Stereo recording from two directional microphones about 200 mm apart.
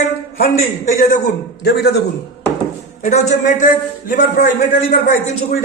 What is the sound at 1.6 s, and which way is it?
Speech, 55° left (ahead or behind).